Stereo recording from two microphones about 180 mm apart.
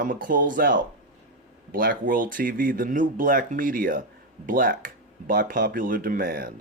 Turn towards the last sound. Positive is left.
turn(degrees=-50)  # may be behind; listen again after turning